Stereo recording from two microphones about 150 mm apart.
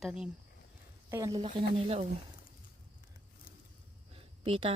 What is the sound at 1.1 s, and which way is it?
Speech, 25° right (ahead or behind).